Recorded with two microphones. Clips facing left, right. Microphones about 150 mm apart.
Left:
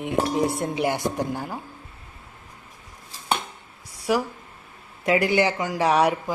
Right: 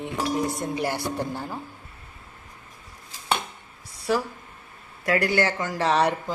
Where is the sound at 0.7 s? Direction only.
15° left (ahead or behind).